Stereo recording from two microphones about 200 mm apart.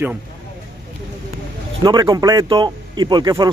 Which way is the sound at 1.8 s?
20° right (ahead or behind).